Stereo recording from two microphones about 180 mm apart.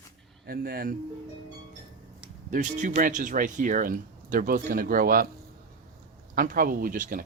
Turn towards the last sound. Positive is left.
turn(degrees=-50)  # may be behind; listen again after turning